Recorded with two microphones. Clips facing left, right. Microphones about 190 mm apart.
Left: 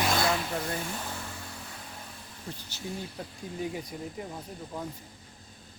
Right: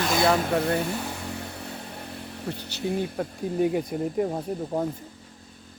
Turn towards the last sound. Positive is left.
turn(degrees=-50)  # may be behind; listen again after turning